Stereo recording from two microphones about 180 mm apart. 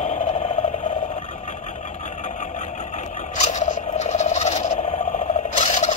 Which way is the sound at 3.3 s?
40° left (ahead or behind).